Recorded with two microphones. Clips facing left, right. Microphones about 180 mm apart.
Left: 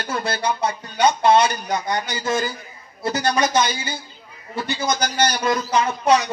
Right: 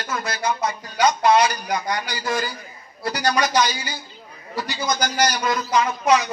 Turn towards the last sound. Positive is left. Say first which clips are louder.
# left 1 dB
turn(degrees=30)  # may be behind; listen again after turning